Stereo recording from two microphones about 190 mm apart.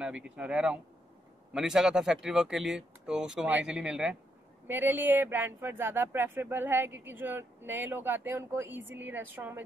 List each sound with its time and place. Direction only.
0.0 s speech: 5° right (ahead or behind)
8.7 s speech: 80° right
9.0 s speech: 10° right (ahead or behind)